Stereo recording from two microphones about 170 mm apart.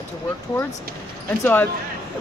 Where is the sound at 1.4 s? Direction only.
10° left (ahead or behind).